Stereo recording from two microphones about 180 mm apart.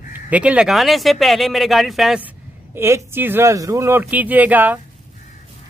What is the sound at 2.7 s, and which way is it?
Speech, 15° right (ahead or behind).